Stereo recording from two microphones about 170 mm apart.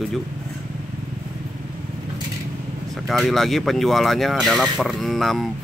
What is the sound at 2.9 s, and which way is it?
Speech, centre (ahead or behind).